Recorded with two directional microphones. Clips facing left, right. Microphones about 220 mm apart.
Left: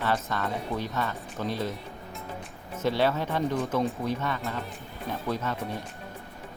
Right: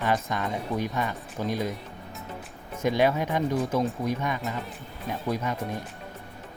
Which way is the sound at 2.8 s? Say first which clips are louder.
Right 2 dB; 15° right (ahead or behind).